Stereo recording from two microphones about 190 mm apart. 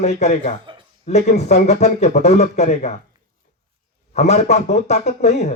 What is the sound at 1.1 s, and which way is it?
Speech, 35° left (ahead or behind).